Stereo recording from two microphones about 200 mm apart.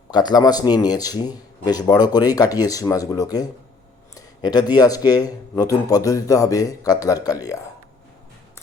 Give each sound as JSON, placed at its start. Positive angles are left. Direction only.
{"t": 0.1, "sound": "a man's voice", "side_deg": 20}